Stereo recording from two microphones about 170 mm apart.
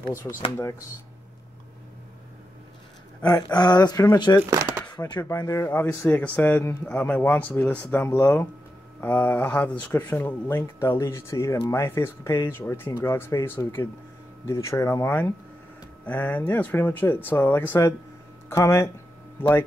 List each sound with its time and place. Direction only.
0.2 s speech: 15° left (ahead or behind)
3.3 s speech: 25° left (ahead or behind)
4.4 s speech: 15° right (ahead or behind)
5.1 s speech: 15° left (ahead or behind)